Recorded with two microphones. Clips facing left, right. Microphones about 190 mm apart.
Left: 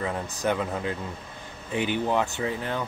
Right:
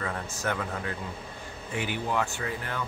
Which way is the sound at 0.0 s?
20° left (ahead or behind).